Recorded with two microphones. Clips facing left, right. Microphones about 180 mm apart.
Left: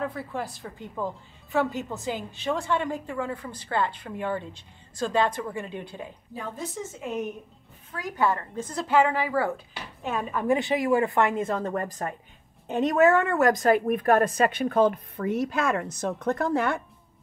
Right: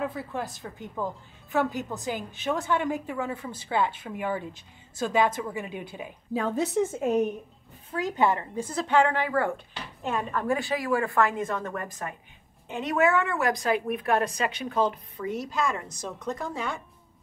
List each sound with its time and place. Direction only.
0.0 s a woman's voice: centre (ahead or behind)
6.3 s a woman's voice: 85° right
7.0 s a woman's voice: 40° right (ahead or behind)
7.9 s a woman's voice: 20° right (ahead or behind)
8.6 s a woman's voice: centre (ahead or behind)
10.4 s a woman's voice: 20° left (ahead or behind); by 16.8 s 60° left (ahead or behind)